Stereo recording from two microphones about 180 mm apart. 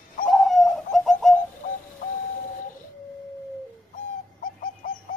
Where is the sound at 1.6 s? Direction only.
50° left (ahead or behind).